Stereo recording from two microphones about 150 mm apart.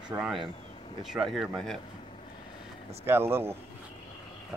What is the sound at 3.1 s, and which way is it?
Speech, 15° right (ahead or behind).